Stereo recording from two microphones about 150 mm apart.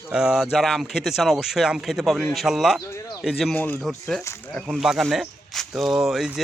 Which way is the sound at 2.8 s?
20° left (ahead or behind).